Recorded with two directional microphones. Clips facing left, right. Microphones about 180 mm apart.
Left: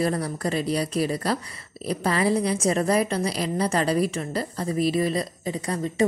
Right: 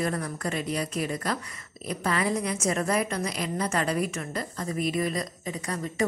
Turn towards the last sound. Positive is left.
turn(degrees=30)  # may be behind; listen again after turning